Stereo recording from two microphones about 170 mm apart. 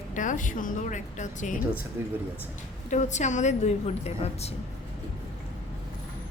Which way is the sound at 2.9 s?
45° left (ahead or behind).